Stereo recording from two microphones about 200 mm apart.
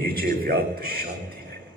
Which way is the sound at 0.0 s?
50° right (ahead or behind).